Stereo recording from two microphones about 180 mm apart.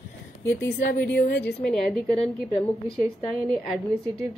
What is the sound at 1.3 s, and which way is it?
Speech, 65° left (ahead or behind).